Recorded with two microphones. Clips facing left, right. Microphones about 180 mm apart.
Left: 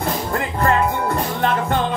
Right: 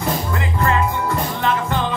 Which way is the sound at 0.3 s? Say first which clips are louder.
Left 4 dB; 50° left (ahead or behind).